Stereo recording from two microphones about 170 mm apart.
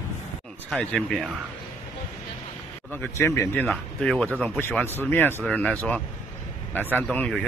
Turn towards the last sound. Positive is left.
turn(degrees=5)  # may be behind; listen again after turning